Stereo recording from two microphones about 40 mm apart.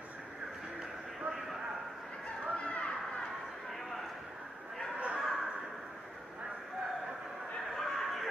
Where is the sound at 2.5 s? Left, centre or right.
Left.